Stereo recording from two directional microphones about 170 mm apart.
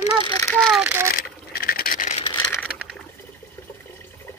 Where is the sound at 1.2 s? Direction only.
60° left (ahead or behind).